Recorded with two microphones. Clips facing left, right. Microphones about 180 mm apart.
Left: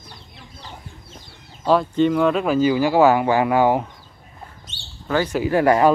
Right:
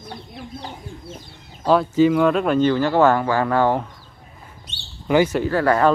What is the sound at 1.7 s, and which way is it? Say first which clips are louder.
Speech: right 1 dB; centre (ahead or behind).